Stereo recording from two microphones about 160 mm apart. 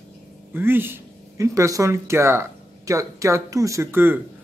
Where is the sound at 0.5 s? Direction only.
15° right (ahead or behind).